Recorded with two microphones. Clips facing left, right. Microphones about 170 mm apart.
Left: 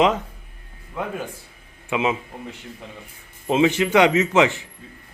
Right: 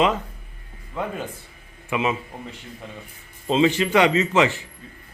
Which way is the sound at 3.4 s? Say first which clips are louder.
Left 1 dB; 15° left (ahead or behind).